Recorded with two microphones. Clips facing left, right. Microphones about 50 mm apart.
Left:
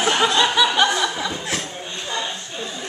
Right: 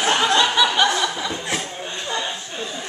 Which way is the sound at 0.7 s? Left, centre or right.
Centre.